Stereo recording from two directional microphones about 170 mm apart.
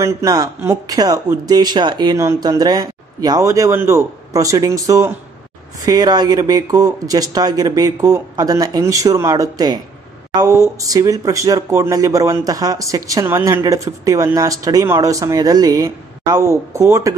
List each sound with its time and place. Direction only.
0.0 s speech: 20° right (ahead or behind)